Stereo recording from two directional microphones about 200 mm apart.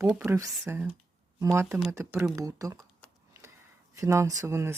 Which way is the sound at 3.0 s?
5° left (ahead or behind).